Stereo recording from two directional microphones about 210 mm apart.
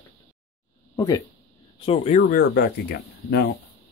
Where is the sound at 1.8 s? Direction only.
30° left (ahead or behind); by 3.6 s 50° left (ahead or behind).